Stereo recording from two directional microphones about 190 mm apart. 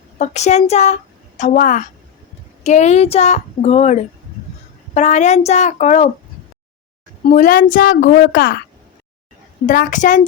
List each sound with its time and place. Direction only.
0.2 s speech: 35° left (ahead or behind)
7.3 s a woman's voice: 45° left (ahead or behind)
9.6 s a woman's voice: 45° left (ahead or behind)